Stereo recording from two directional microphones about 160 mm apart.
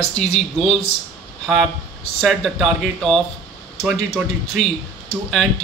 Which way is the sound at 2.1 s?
Centre (ahead or behind).